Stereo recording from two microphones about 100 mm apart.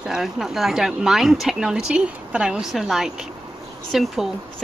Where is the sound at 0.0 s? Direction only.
5° right (ahead or behind).